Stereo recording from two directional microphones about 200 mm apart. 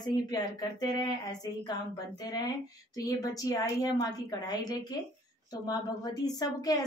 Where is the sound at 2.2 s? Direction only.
20° left (ahead or behind).